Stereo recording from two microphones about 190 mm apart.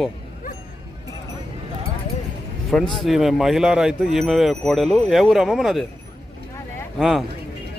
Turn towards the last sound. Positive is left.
turn(degrees=0)  # may be behind; listen again after turning